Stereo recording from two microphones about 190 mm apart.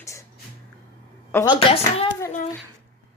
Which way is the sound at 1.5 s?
30° left (ahead or behind).